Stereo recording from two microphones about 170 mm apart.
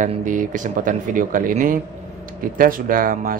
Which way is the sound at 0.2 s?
50° right (ahead or behind).